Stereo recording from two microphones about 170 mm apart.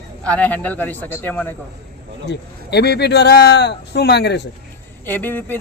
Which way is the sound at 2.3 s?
75° left (ahead or behind).